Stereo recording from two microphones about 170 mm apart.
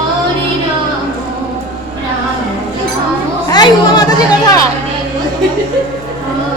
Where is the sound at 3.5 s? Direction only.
25° left (ahead or behind).